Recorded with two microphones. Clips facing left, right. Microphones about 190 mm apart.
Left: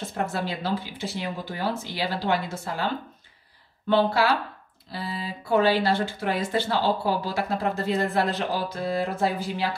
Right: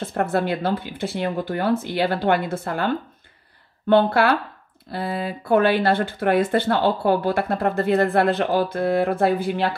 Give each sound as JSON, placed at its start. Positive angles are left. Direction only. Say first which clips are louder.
{"t": 0.0, "sound": "speech", "louder": "right 6 dB", "side_deg": -55}
{"t": 3.9, "sound": "speech", "louder": "right 4 dB", "side_deg": -55}